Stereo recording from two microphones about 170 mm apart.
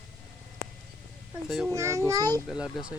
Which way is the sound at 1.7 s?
15° right (ahead or behind).